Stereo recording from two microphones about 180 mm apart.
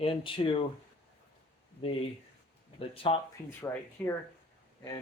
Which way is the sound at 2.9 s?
30° left (ahead or behind).